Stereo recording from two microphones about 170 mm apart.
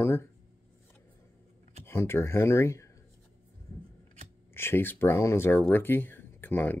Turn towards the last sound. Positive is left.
turn(degrees=10)  # may be behind; listen again after turning